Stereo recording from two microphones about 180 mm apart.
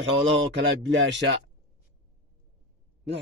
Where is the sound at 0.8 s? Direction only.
75° right (ahead or behind).